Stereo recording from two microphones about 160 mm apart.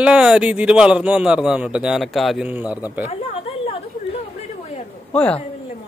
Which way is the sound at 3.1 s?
40° left (ahead or behind).